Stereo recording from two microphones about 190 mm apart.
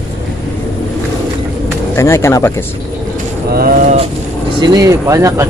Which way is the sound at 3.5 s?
50° right (ahead or behind).